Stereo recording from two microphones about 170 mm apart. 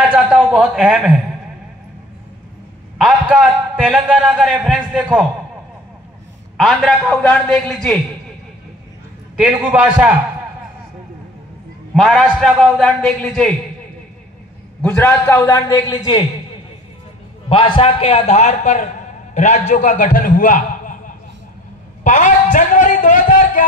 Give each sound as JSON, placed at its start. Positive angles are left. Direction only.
{"t": 0.1, "sound": "a man's voice", "side_deg": -5}
{"t": 3.0, "sound": "a man's voice", "side_deg": -5}
{"t": 6.5, "sound": "a man's voice", "side_deg": 0}
{"t": 9.4, "sound": "a man's voice", "side_deg": -5}
{"t": 11.9, "sound": "a man's voice", "side_deg": 0}
{"t": 14.8, "sound": "a man's voice", "side_deg": 10}
{"t": 15.7, "sound": "speech", "side_deg": 25}
{"t": 17.5, "sound": "a man's voice", "side_deg": 30}